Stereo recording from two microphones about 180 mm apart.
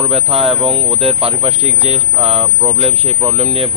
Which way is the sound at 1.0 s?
30° right (ahead or behind).